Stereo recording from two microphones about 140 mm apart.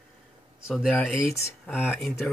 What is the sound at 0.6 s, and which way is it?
Speech, centre (ahead or behind).